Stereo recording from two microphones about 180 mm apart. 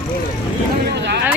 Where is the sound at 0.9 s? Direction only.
70° right (ahead or behind).